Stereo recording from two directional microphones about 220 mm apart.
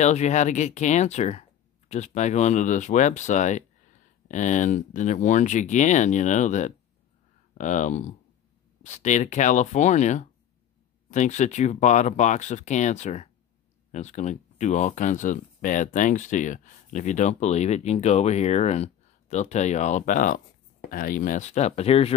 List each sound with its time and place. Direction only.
0.0 s speech: 30° left (ahead or behind)